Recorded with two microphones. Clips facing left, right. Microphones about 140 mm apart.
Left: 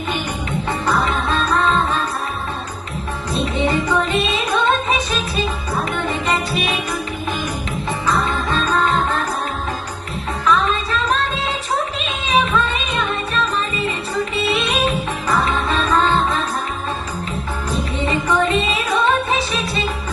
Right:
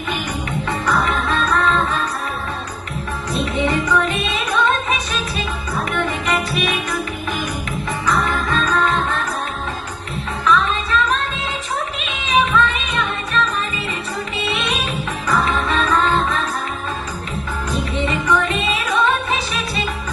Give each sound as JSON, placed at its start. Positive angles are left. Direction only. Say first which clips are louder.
{"t": 0.7, "sound": "music", "louder": "even", "side_deg": 30}
{"t": 3.3, "sound": "music", "louder": "left 1 dB", "side_deg": 30}
{"t": 6.1, "sound": "music", "louder": "left 1 dB", "side_deg": 30}
{"t": 8.0, "sound": "music", "louder": "even", "side_deg": 30}
{"t": 10.4, "sound": "music", "louder": "even", "side_deg": 35}
{"t": 12.3, "sound": "music", "louder": "right 1 dB", "side_deg": 35}
{"t": 18.0, "sound": "music", "louder": "left 2 dB", "side_deg": 30}